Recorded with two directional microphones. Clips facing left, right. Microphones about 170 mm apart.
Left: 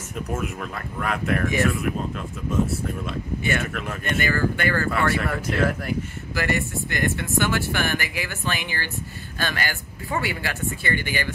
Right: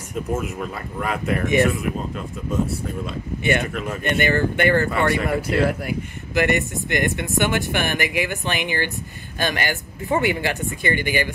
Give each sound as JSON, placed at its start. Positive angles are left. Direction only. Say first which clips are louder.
{"t": 0.3, "sound": "speech", "louder": "right 3 dB", "side_deg": 0}
{"t": 1.4, "sound": "speech", "louder": "right 6 dB", "side_deg": -20}
{"t": 1.7, "sound": "speech", "louder": "right 1 dB", "side_deg": 0}
{"t": 4.0, "sound": "speech", "louder": "right 3 dB", "side_deg": -20}